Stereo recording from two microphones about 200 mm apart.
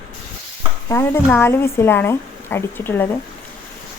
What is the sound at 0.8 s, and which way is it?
A woman's voice, 10° left (ahead or behind).